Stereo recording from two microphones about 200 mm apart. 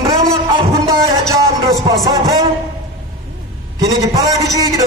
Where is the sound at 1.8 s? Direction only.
20° right (ahead or behind).